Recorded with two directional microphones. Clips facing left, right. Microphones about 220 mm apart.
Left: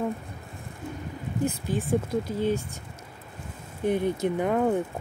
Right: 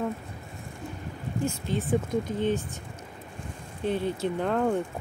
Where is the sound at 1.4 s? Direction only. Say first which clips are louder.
Left 2 dB; 15° left (ahead or behind).